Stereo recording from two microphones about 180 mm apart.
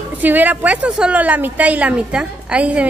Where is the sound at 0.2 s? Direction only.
10° right (ahead or behind).